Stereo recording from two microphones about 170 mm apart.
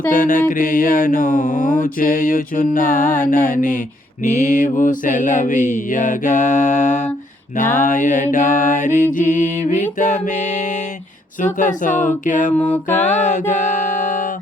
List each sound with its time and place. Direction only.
0.1 s mantra: 50° left (ahead or behind)
12.9 s music: 45° left (ahead or behind)